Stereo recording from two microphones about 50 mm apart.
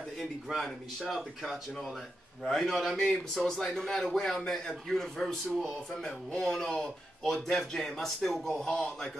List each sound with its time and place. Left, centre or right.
0.2 s a man's voice: centre